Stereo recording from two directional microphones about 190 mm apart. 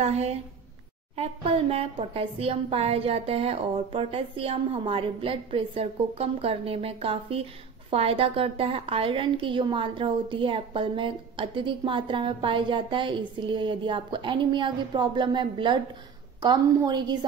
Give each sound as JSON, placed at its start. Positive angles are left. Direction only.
{"t": 0.0, "sound": "a woman's voice", "side_deg": -35}